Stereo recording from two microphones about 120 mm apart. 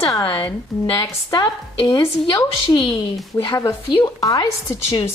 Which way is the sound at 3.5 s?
25° left (ahead or behind).